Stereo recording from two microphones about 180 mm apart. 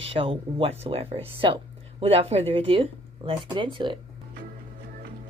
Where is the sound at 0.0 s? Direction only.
30° right (ahead or behind).